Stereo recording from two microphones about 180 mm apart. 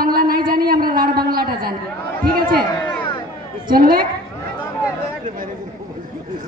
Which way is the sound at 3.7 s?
55° right (ahead or behind).